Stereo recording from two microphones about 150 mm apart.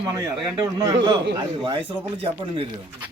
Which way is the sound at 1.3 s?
30° right (ahead or behind).